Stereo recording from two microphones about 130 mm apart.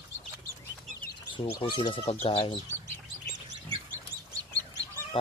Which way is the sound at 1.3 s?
40° left (ahead or behind).